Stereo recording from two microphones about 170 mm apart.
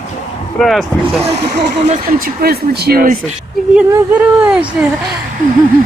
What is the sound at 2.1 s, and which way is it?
Speech, 60° right (ahead or behind).